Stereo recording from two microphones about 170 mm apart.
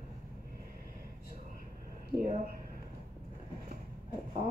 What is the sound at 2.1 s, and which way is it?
Speech, 55° right (ahead or behind).